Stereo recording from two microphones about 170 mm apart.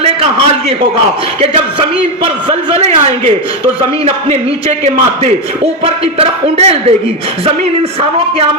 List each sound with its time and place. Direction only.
0.0 s a sound: 35° right (ahead or behind)
2.2 s speech: 35° right (ahead or behind)
5.8 s speech: 35° right (ahead or behind)